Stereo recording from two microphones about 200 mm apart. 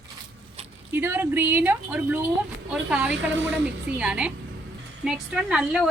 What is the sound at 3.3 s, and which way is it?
Speech, 65° right (ahead or behind).